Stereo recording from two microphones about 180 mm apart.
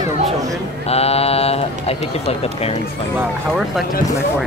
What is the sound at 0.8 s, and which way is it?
Speech, 35° left (ahead or behind).